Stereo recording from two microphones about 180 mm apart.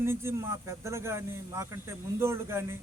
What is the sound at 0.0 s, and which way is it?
Speech, 15° right (ahead or behind).